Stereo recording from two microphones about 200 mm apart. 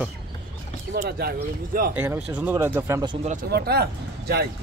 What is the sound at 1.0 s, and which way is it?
Speech, 50° right (ahead or behind).